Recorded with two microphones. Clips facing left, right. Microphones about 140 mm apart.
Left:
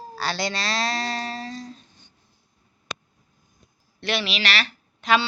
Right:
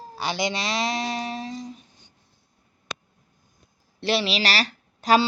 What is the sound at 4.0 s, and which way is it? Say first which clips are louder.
A woman's voice: right 3 dB; 30° right (ahead or behind).